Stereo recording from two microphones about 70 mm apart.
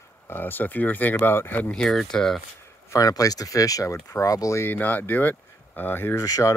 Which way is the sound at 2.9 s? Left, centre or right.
Left.